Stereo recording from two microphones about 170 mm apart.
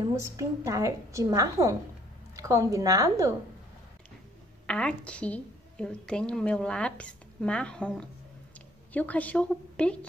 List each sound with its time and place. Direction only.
0.0 s a woman's voice: 15° right (ahead or behind)
4.6 s a woman's voice: 5° left (ahead or behind)